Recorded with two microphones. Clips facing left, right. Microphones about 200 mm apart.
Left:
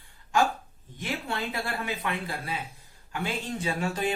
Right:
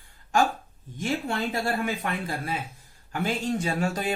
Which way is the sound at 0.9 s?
45° right (ahead or behind).